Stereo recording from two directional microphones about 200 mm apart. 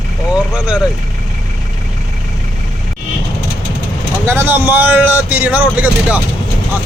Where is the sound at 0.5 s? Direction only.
5° right (ahead or behind).